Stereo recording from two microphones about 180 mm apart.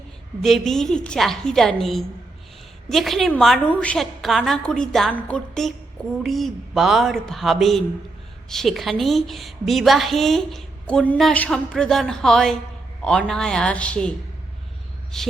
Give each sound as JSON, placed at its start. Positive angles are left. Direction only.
{"t": 0.4, "sound": "a woman's voice", "side_deg": 0}
{"t": 15.1, "sound": "a woman's voice", "side_deg": 0}